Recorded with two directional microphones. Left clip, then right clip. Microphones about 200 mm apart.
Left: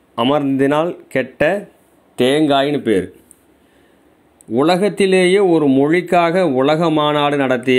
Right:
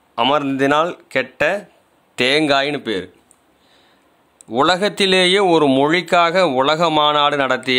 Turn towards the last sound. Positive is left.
turn(degrees=-5)  # may be behind; listen again after turning